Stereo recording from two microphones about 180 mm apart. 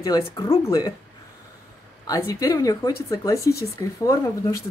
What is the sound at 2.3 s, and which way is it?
Speech, 20° left (ahead or behind).